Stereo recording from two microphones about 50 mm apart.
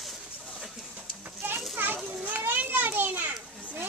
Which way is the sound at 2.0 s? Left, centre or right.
Right.